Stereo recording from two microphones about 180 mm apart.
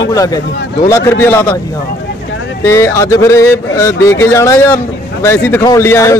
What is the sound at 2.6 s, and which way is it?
Speech, 15° left (ahead or behind).